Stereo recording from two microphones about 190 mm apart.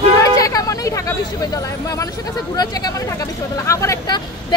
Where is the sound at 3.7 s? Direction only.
15° left (ahead or behind).